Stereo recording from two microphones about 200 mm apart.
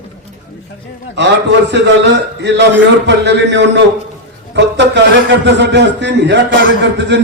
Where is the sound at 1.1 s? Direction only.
60° right (ahead or behind).